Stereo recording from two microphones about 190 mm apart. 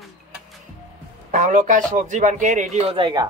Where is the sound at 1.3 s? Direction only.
40° right (ahead or behind).